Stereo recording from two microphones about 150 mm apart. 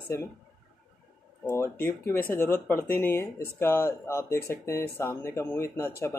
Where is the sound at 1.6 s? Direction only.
15° left (ahead or behind).